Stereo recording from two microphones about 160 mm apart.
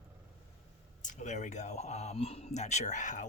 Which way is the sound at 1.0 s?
50° left (ahead or behind).